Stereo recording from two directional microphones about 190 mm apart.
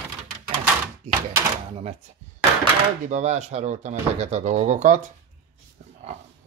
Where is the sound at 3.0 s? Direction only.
40° right (ahead or behind).